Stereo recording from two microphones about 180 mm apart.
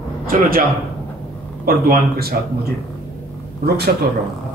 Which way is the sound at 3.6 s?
60° right (ahead or behind).